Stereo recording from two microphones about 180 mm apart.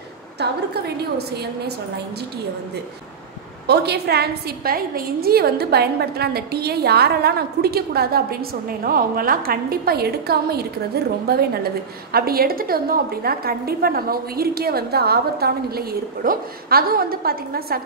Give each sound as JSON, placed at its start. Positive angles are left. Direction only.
{"t": 0.4, "sound": "a woman's voice", "side_deg": -65}
{"t": 3.6, "sound": "a woman's voice", "side_deg": -65}